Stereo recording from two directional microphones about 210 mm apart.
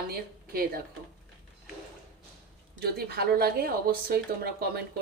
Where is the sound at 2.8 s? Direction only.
50° right (ahead or behind).